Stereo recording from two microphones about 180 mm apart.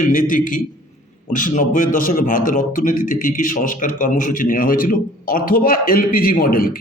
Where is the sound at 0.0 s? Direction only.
50° left (ahead or behind).